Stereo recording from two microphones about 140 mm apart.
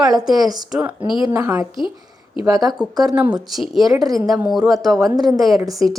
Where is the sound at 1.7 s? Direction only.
30° left (ahead or behind).